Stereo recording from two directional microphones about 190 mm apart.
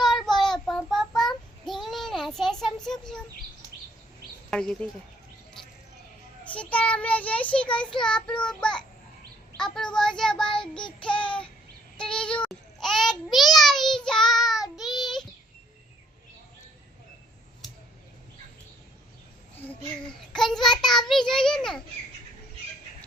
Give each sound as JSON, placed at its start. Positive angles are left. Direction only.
{"t": 0.0, "sound": "child singing", "side_deg": 0}
{"t": 4.5, "sound": "child singing", "side_deg": 5}
{"t": 6.5, "sound": "child singing", "side_deg": 5}
{"t": 14.9, "sound": "child singing", "side_deg": 20}
{"t": 20.3, "sound": "a child's voice", "side_deg": 5}
{"t": 21.1, "sound": "child singing", "side_deg": 0}